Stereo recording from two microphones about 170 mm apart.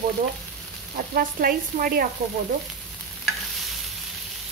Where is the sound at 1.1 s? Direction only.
60° right (ahead or behind).